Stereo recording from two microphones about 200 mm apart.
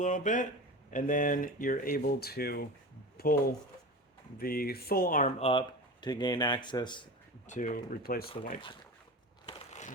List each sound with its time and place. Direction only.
0.0 s speech: 40° left (ahead or behind)
4.4 s speech: 50° left (ahead or behind)
5.4 s speech: 25° left (ahead or behind)
7.4 s speech: 40° left (ahead or behind)
9.5 s crushing: 35° left (ahead or behind)